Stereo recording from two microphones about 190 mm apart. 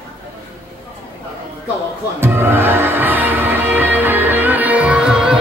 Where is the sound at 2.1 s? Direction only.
10° right (ahead or behind).